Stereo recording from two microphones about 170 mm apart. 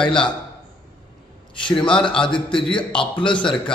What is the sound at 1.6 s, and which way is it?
A man's voice, 30° left (ahead or behind).